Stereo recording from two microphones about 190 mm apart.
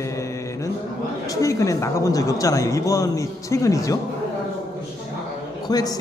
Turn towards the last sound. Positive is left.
turn(degrees=20)  # may be behind; listen again after turning